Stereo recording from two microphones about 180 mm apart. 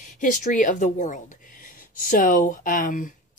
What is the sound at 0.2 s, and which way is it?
Speech, 45° left (ahead or behind).